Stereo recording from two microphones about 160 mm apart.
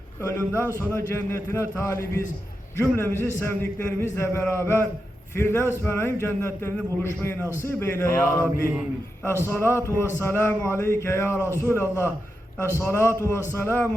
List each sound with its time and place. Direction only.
0.2 s a man's voice: 15° left (ahead or behind)
9.5 s a man's voice: 15° left (ahead or behind)